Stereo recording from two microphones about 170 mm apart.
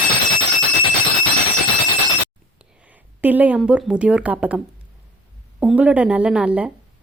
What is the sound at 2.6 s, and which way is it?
A woman's voice, 10° right (ahead or behind).